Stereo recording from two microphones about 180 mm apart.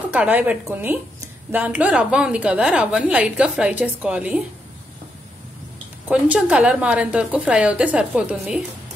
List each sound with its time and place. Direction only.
0.1 s a woman's voice: 10° right (ahead or behind)
6.0 s a woman's voice: 10° right (ahead or behind)